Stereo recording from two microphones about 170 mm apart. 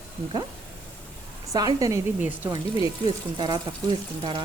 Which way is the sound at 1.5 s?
20° right (ahead or behind).